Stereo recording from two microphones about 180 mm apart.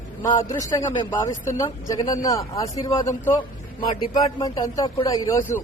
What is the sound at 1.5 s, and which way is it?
A man's voice, 20° left (ahead or behind).